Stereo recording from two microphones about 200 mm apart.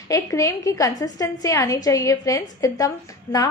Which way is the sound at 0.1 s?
15° left (ahead or behind).